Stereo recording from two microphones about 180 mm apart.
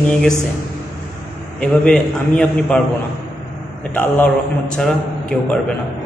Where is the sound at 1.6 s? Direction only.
5° left (ahead or behind).